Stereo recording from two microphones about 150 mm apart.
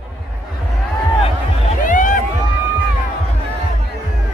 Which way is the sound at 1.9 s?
60° left (ahead or behind).